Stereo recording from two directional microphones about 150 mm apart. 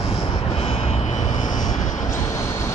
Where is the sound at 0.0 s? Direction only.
40° left (ahead or behind); by 2.1 s 55° left (ahead or behind).